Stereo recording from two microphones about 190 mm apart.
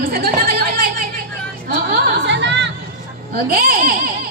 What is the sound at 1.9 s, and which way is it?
Speech, 65° right (ahead or behind).